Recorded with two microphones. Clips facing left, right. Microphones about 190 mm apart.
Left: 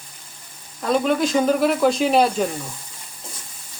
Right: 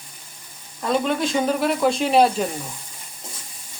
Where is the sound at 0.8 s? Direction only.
Centre (ahead or behind).